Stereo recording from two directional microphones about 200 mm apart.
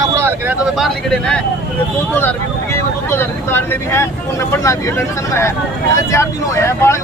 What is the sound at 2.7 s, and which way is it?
Speech, 10° left (ahead or behind).